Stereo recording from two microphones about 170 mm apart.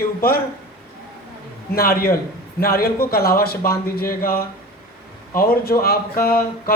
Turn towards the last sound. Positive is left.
turn(degrees=60)  # may be behind; listen again after turning